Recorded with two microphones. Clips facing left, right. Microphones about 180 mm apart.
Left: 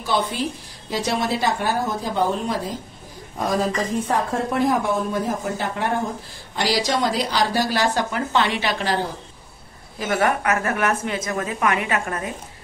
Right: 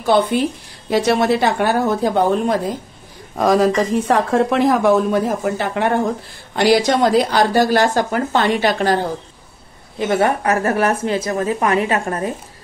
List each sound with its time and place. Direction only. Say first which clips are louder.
0.0 s a woman's voice: right 8 dB; 55° right (ahead or behind)
3.3 s a woman's voice: right 8 dB; 90° right; by 5.9 s 70° right (ahead or behind)
6.5 s speech: right 8 dB; 55° right (ahead or behind)
9.9 s a woman's voice: right 4 dB; 30° right (ahead or behind)